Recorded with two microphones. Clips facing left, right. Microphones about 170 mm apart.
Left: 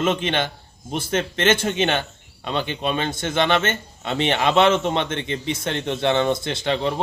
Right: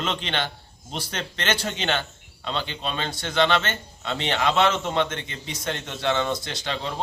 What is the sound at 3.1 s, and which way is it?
Speech, 50° left (ahead or behind).